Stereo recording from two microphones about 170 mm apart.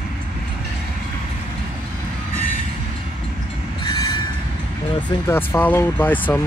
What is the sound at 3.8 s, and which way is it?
Train, 25° left (ahead or behind).